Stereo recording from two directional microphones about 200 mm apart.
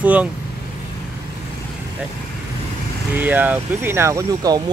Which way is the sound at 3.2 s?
10° right (ahead or behind).